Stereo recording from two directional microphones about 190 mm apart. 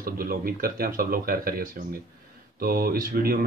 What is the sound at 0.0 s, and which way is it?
Speech, 50° right (ahead or behind).